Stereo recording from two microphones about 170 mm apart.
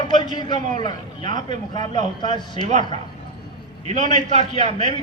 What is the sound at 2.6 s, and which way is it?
A man's voice, 45° right (ahead or behind).